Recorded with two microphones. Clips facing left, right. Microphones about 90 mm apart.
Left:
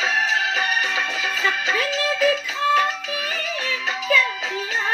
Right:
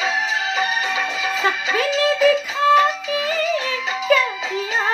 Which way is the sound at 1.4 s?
15° right (ahead or behind).